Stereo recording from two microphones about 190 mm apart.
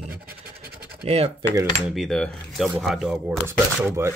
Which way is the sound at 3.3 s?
15° right (ahead or behind).